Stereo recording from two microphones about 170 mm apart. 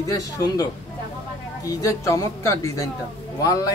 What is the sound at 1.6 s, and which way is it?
A woman's voice, 20° left (ahead or behind).